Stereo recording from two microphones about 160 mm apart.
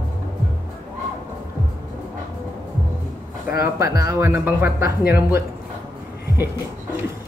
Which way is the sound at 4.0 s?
20° right (ahead or behind).